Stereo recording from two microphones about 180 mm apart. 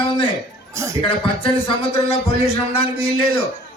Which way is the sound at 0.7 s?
15° right (ahead or behind).